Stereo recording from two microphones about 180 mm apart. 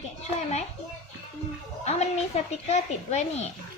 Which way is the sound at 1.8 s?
35° left (ahead or behind).